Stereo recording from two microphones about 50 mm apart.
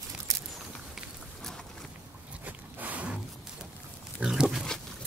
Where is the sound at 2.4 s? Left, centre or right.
Right.